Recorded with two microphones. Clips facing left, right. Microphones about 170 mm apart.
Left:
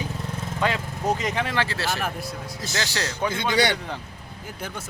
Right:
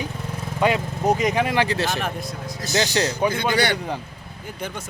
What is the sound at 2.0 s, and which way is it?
Speech, 5° left (ahead or behind).